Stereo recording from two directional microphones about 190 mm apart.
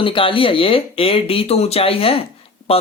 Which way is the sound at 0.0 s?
25° left (ahead or behind).